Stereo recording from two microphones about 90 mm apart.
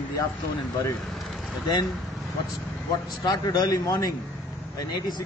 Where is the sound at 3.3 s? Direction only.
50° left (ahead or behind).